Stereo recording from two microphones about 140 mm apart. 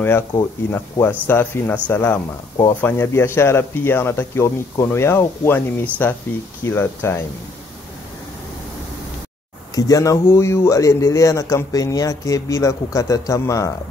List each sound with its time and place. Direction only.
0.7 s speech: 15° left (ahead or behind)
9.8 s speech: 25° left (ahead or behind)